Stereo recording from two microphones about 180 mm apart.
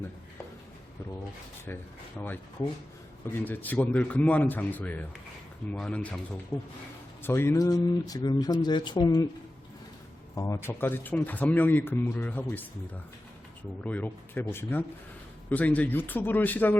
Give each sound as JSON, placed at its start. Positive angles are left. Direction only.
{"t": 1.6, "sound": "speech", "side_deg": 10}
{"t": 7.2, "sound": "speech", "side_deg": 15}
{"t": 10.3, "sound": "speech", "side_deg": 20}
{"t": 13.8, "sound": "speech", "side_deg": 10}